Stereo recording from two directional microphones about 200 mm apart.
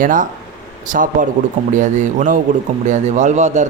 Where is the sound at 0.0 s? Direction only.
40° right (ahead or behind).